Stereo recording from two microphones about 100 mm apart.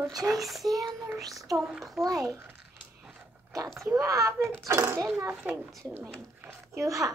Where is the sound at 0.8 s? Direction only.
20° right (ahead or behind).